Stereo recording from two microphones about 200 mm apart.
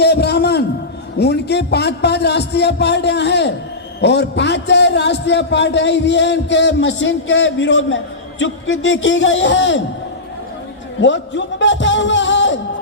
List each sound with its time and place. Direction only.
0.0 s a sound: 55° left (ahead or behind)
4.0 s a man's voice: 60° left (ahead or behind)
11.0 s a man's voice: 65° left (ahead or behind)